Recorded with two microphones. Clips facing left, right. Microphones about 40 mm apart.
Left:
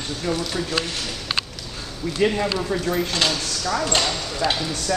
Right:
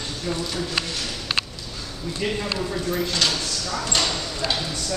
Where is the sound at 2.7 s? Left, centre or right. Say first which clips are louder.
Left 2 dB; left.